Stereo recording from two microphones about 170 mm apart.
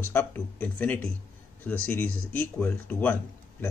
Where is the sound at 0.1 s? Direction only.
10° left (ahead or behind).